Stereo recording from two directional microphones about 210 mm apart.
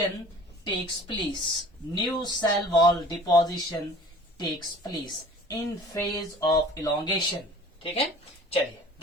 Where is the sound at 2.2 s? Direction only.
20° left (ahead or behind).